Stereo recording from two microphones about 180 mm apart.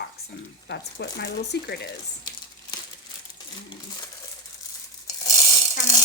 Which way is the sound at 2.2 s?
25° left (ahead or behind).